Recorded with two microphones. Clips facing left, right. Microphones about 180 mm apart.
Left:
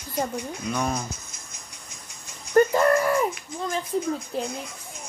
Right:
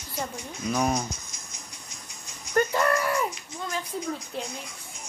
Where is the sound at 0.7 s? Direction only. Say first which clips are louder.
Right 3 dB; 10° right (ahead or behind).